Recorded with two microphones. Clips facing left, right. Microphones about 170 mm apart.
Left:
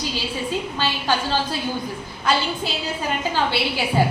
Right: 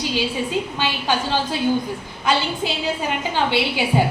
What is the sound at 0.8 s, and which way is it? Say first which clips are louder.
Speech: right 1 dB; 15° right (ahead or behind).